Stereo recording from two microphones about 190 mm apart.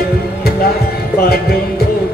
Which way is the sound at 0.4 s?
55° left (ahead or behind).